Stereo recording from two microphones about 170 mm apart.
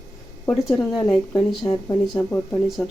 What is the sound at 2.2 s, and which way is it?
Speech, 10° left (ahead or behind).